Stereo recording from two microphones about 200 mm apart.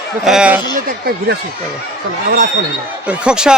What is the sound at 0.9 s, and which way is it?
Speech, 50° right (ahead or behind).